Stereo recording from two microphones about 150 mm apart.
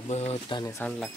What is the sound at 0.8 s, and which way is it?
Speech, 5° left (ahead or behind).